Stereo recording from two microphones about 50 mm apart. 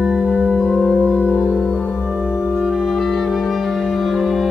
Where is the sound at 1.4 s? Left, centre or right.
Left.